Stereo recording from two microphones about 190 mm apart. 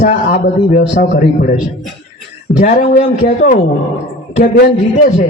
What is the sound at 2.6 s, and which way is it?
A man's voice, 45° left (ahead or behind).